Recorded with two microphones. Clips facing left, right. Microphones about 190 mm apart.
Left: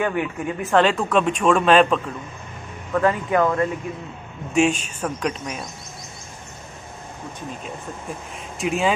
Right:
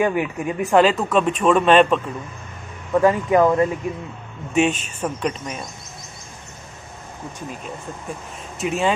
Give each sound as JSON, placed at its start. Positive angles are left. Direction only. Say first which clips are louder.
{"t": 0.0, "sound": "speech", "louder": "right 3 dB", "side_deg": -10}
{"t": 2.9, "sound": "speech", "louder": "right 4 dB", "side_deg": -15}
{"t": 4.6, "sound": "speech", "louder": "even", "side_deg": -5}
{"t": 8.5, "sound": "speech", "louder": "even", "side_deg": 0}